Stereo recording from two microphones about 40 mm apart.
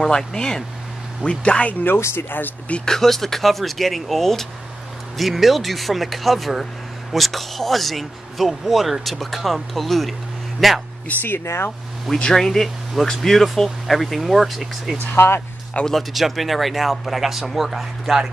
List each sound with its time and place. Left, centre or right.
0.0 s speech: centre
1.9 s speech: left
2.8 s speech: centre
11.1 s speech: left
11.3 s speech: left
12.3 s speech: centre
15.1 s speech: left
15.9 s speech: centre